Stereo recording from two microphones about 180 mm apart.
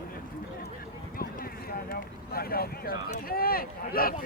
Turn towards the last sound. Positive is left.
turn(degrees=55)  # may be behind; listen again after turning